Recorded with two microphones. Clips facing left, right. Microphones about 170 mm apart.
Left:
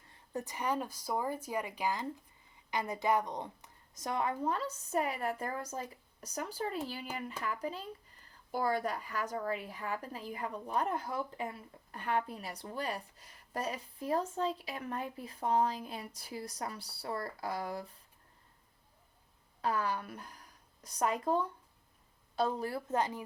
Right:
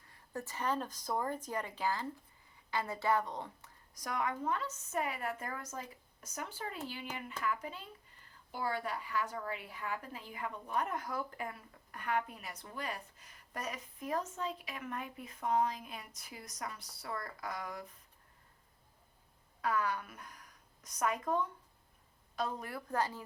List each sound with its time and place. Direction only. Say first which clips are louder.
0.1 s a woman's voice: left 3 dB; 15° left (ahead or behind)
19.6 s a woman's voice: left 1 dB; 30° left (ahead or behind)